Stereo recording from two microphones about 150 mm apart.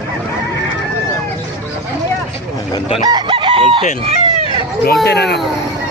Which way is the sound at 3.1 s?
35° right (ahead or behind).